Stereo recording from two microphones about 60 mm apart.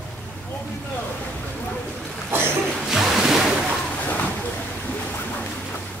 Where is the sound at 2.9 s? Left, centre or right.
Centre.